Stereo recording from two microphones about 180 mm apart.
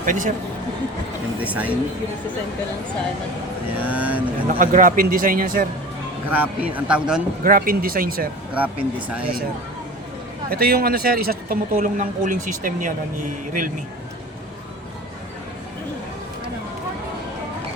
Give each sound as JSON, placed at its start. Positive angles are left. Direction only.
{"t": 0.0, "sound": "speech", "side_deg": -45}
{"t": 1.5, "sound": "speech", "side_deg": -10}
{"t": 3.8, "sound": "speech", "side_deg": -10}
{"t": 4.4, "sound": "speech", "side_deg": -50}
{"t": 6.3, "sound": "speech", "side_deg": -10}
{"t": 7.4, "sound": "speech", "side_deg": -50}
{"t": 8.5, "sound": "speech", "side_deg": -10}
{"t": 10.5, "sound": "speech", "side_deg": -55}